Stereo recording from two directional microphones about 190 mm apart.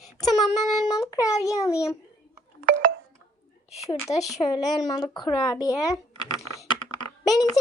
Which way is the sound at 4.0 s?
15° left (ahead or behind).